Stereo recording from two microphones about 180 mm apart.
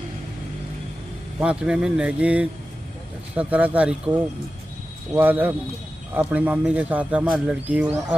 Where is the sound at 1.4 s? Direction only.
5° right (ahead or behind).